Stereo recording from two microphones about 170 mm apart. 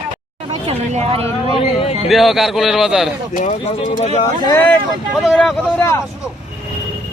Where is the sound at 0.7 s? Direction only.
35° right (ahead or behind).